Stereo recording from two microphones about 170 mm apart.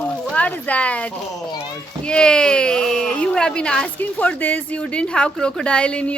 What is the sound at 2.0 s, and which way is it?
Speech, 5° left (ahead or behind).